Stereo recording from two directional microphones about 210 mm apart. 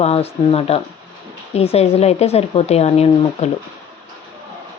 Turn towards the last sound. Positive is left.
turn(degrees=30)  # may be behind; listen again after turning